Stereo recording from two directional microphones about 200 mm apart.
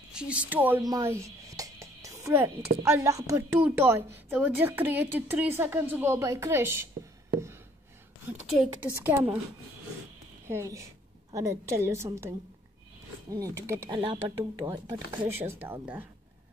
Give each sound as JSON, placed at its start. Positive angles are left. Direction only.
{"t": 0.1, "sound": "a woman's voice", "side_deg": -5}
{"t": 0.8, "sound": "music", "side_deg": -15}
{"t": 2.8, "sound": "a woman's voice", "side_deg": -15}
{"t": 8.3, "sound": "a woman's voice", "side_deg": -10}
{"t": 10.5, "sound": "a woman's voice", "side_deg": -15}